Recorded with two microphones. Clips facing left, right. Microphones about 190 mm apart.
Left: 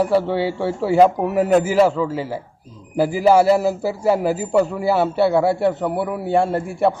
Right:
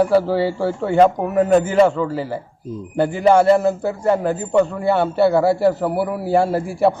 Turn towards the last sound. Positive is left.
turn(degrees=0)  # may be behind; listen again after turning